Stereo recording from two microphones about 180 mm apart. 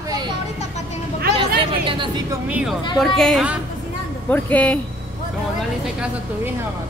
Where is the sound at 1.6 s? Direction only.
30° right (ahead or behind).